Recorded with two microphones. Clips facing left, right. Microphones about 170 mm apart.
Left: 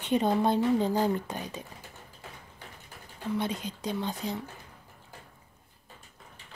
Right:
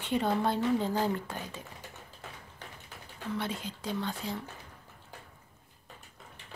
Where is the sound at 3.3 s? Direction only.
20° left (ahead or behind).